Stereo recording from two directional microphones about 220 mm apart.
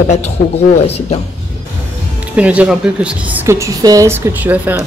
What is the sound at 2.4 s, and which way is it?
Speech, 5° right (ahead or behind).